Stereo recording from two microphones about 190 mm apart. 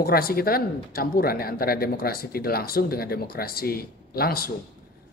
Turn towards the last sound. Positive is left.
turn(degrees=55)  # may be behind; listen again after turning